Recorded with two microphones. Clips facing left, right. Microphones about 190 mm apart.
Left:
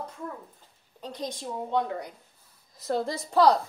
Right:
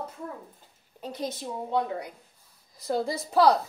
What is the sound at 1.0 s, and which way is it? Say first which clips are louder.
A woman's voice: right 2 dB; 5° right (ahead or behind).